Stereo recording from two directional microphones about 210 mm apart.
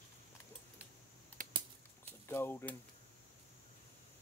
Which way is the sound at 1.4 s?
40° right (ahead or behind).